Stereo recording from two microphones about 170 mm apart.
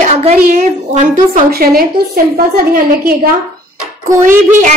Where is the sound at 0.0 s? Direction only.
40° right (ahead or behind).